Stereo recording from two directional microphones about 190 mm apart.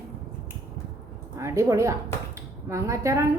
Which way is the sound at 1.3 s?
15° right (ahead or behind).